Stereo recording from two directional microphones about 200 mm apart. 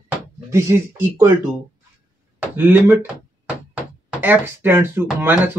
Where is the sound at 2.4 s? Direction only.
10° right (ahead or behind).